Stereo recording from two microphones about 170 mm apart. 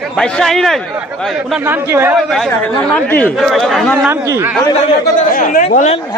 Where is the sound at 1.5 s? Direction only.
10° right (ahead or behind).